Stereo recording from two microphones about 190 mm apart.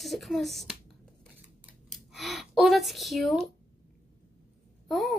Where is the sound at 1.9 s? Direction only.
Centre (ahead or behind).